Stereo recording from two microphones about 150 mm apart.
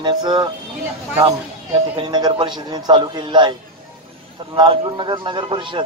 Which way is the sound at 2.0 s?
30° right (ahead or behind).